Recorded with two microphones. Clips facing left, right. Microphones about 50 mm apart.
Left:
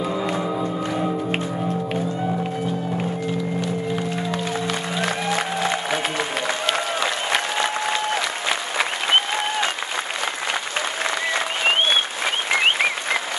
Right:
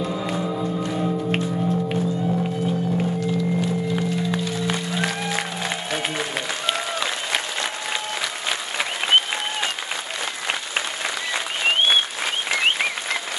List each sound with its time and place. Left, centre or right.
0.0 s music: centre
4.4 s music: left
5.3 s music: centre
8.1 s applause: centre
12.4 s applause: centre